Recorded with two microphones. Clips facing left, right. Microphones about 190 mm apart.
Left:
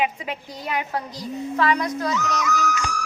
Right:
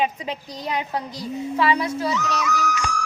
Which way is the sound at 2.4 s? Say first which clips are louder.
Even; 45° left (ahead or behind).